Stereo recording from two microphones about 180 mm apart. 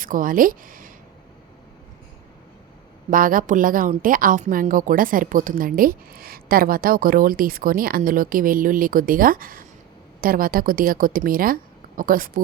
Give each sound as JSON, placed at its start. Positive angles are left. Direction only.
{"t": 0.0, "sound": "a woman's voice", "side_deg": -50}
{"t": 3.1, "sound": "a woman's voice", "side_deg": -50}